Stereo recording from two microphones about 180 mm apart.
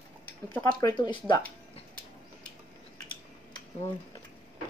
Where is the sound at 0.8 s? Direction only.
25° left (ahead or behind).